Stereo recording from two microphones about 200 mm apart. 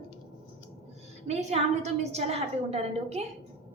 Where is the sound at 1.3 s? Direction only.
35° right (ahead or behind).